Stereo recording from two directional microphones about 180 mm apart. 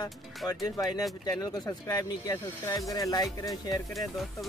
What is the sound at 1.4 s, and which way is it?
Speech, 20° left (ahead or behind).